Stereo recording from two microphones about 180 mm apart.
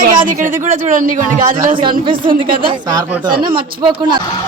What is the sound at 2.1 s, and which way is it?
Speech, 30° right (ahead or behind).